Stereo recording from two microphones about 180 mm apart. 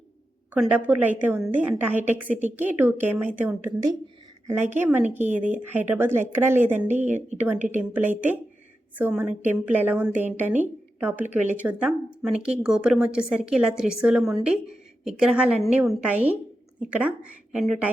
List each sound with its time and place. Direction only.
0.5 s a woman's voice: 10° right (ahead or behind)
5.0 s a woman's voice: 40° right (ahead or behind)
5.5 s a woman's voice: 10° right (ahead or behind)
6.8 s a woman's voice: 40° right (ahead or behind)
7.7 s a woman's voice: 10° right (ahead or behind)